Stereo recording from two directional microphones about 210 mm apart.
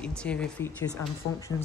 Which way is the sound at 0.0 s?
5° left (ahead or behind).